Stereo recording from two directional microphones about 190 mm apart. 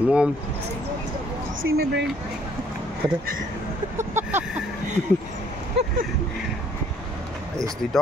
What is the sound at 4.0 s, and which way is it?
Vehicle, 10° right (ahead or behind).